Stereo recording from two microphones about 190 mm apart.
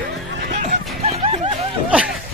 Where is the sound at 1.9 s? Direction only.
5° right (ahead or behind).